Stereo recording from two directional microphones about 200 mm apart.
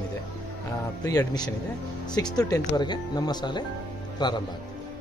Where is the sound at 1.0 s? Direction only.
20° left (ahead or behind).